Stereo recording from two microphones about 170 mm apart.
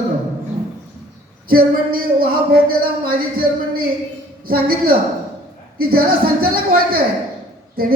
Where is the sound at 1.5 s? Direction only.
60° right (ahead or behind).